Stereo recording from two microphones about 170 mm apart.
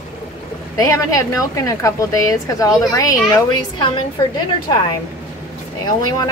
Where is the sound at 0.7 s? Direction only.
20° left (ahead or behind).